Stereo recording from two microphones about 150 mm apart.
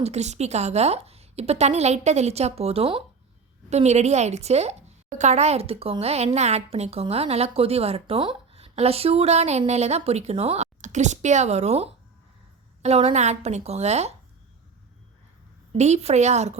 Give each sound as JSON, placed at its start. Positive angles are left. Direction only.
{"t": 0.0, "sound": "speech", "side_deg": -45}
{"t": 15.7, "sound": "speech", "side_deg": -50}